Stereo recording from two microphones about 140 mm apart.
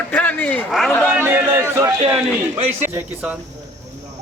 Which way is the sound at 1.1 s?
15° right (ahead or behind).